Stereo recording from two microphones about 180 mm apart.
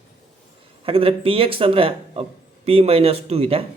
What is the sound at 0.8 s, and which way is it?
Speech, 30° right (ahead or behind).